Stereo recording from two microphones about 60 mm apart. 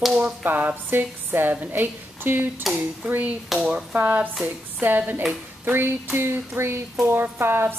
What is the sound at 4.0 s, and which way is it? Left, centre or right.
A woman's voice, right.